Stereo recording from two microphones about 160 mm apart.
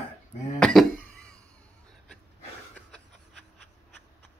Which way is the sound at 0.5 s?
5° left (ahead or behind).